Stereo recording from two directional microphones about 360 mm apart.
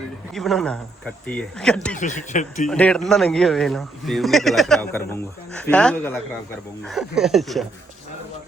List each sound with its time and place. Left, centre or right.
0.3 s speech: centre
2.0 s speech: centre
2.6 s speech: centre